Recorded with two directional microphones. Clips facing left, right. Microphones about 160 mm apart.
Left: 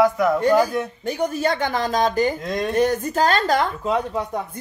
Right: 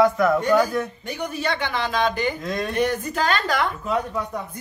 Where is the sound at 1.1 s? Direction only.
40° left (ahead or behind).